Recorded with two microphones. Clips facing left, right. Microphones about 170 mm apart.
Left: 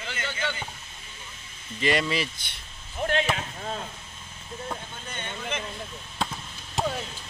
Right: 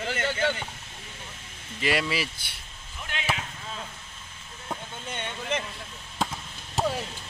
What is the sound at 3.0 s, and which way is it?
Basketball bounce, 40° left (ahead or behind).